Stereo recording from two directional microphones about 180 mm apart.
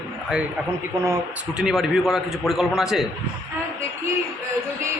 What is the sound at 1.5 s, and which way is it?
A man's voice, centre (ahead or behind).